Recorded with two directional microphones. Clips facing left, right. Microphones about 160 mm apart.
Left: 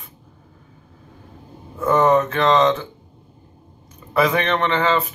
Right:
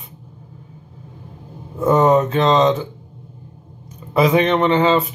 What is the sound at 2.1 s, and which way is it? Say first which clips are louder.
Speech: right 2 dB; 20° right (ahead or behind).